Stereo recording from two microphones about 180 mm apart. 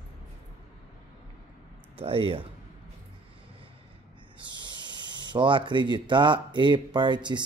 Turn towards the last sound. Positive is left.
turn(degrees=-25)  # may be behind; listen again after turning